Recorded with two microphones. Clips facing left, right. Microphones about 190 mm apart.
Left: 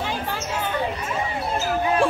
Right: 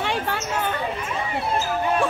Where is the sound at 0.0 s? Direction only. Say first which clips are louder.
Right 2 dB; 70° right (ahead or behind).